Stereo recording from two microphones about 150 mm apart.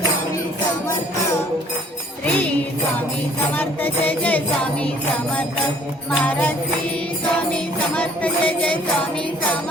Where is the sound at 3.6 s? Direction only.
10° left (ahead or behind).